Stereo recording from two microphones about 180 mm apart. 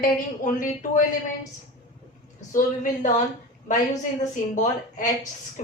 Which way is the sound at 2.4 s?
45° left (ahead or behind).